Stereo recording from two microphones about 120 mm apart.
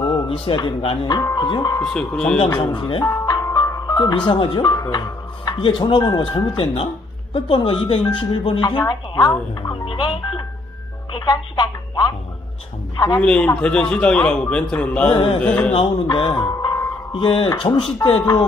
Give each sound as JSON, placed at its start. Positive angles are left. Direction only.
{"t": 0.0, "sound": "speech", "side_deg": 45}
{"t": 1.8, "sound": "a man's voice", "side_deg": 5}
{"t": 2.5, "sound": "speech", "side_deg": 40}
{"t": 3.1, "sound": "ice cream truck", "side_deg": 25}
{"t": 4.3, "sound": "speech", "side_deg": 40}
{"t": 9.6, "sound": "speech", "side_deg": 45}
{"t": 13.2, "sound": "a man's voice", "side_deg": 10}
{"t": 16.1, "sound": "speech", "side_deg": 40}
{"t": 16.4, "sound": "ice cream truck", "side_deg": 30}
{"t": 17.1, "sound": "speech", "side_deg": 45}